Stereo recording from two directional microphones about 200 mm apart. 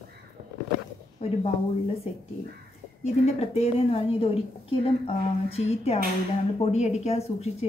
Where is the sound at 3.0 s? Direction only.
35° left (ahead or behind).